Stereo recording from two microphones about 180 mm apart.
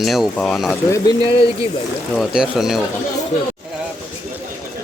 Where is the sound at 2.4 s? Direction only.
Centre (ahead or behind).